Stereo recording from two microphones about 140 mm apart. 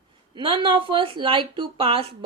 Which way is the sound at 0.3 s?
35° right (ahead or behind).